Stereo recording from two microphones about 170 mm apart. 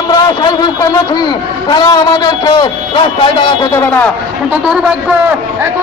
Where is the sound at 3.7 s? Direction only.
10° left (ahead or behind).